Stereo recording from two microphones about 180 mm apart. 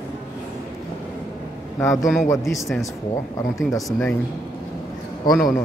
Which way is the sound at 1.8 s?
15° left (ahead or behind).